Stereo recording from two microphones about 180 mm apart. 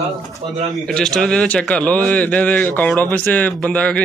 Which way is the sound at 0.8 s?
5° left (ahead or behind).